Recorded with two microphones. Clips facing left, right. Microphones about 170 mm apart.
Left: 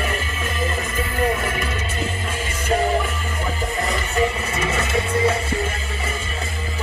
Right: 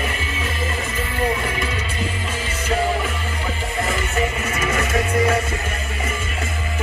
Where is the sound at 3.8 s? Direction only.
35° left (ahead or behind).